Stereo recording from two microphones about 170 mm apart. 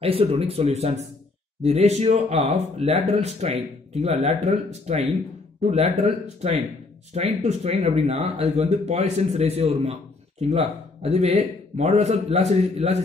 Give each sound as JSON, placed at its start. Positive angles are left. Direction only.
{"t": 0.0, "sound": "a man's voice", "side_deg": -35}